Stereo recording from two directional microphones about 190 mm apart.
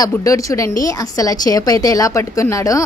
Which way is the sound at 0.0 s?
15° left (ahead or behind).